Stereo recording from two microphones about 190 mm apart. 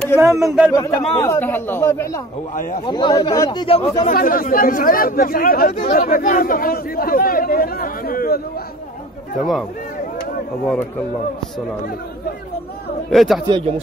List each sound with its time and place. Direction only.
0.2 s speech: 15° right (ahead or behind)
0.7 s speech: 15° left (ahead or behind)
2.9 s speech: 25° left (ahead or behind)
4.1 s speech: 50° left (ahead or behind)
9.4 s speech: centre (ahead or behind)
13.1 s speech: centre (ahead or behind)
13.5 s speech: 25° right (ahead or behind)